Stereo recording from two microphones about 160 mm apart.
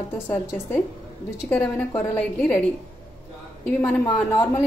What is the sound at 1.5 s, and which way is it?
Speech, 10° left (ahead or behind).